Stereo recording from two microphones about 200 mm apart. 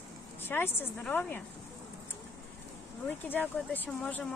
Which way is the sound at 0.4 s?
10° left (ahead or behind).